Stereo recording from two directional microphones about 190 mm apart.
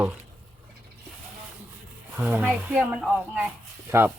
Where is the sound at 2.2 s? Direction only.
5° right (ahead or behind).